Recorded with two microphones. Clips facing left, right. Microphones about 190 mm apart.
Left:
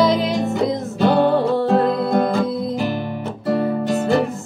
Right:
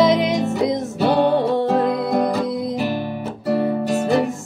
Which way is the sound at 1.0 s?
Centre (ahead or behind).